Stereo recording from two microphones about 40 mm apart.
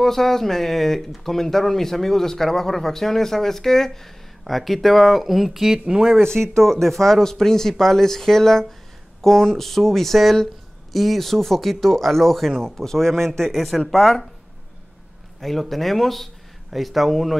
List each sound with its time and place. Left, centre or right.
0.0 s speech: centre
6.2 s speech: centre
15.4 s speech: centre